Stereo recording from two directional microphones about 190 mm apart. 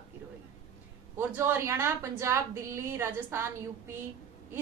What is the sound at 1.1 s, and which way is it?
A woman's voice, 15° right (ahead or behind).